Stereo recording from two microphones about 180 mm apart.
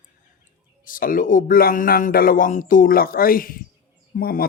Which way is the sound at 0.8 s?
50° left (ahead or behind).